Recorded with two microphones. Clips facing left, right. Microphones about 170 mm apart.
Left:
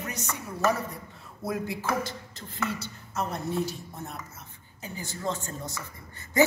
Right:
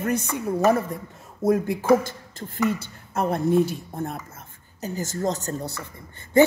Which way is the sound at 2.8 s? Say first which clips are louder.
Right 6 dB; 55° right (ahead or behind).